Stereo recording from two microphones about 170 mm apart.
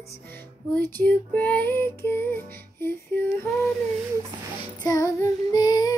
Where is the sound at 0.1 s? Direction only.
15° left (ahead or behind).